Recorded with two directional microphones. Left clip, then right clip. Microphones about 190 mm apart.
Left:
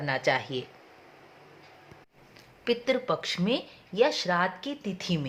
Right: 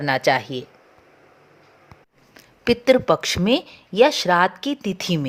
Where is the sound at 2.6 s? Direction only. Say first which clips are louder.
Right 10 dB; 40° right (ahead or behind).